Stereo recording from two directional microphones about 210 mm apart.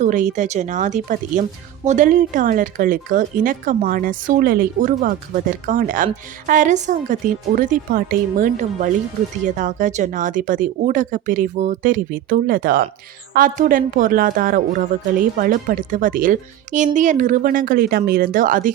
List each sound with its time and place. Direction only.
0.0 s a woman's voice: 35° right (ahead or behind)